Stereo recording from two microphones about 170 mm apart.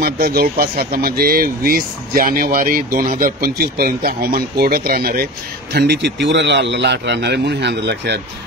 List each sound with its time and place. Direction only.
0.0 s speech: 65° right (ahead or behind)
6.2 s a man's voice: 90° right